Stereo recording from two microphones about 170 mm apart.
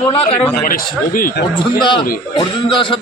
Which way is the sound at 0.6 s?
55° left (ahead or behind).